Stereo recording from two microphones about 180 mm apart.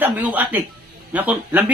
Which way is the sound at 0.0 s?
10° right (ahead or behind).